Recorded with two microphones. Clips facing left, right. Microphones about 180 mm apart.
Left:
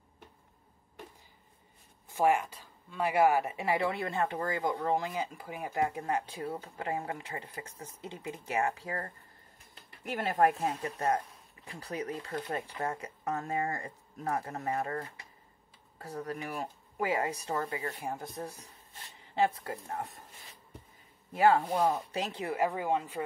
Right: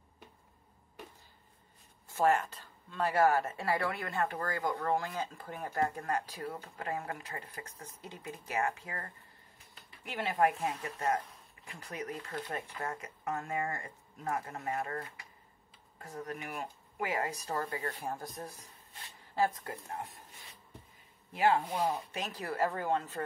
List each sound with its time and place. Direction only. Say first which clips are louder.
2.0 s speech: left 1 dB; 15° left (ahead or behind); by 9.1 s 35° left (ahead or behind)
10.0 s speech: left 3 dB; 45° left (ahead or behind); by 19.8 s 20° left (ahead or behind)
21.3 s speech: left 4 dB; 45° left (ahead or behind)
22.2 s speech: left 2 dB; 25° left (ahead or behind)